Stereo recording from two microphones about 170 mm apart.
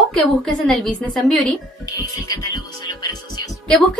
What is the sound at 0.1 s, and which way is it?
Speech, 5° left (ahead or behind).